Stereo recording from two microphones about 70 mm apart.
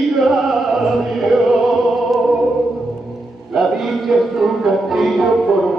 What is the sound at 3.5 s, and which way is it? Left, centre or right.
Speech, centre.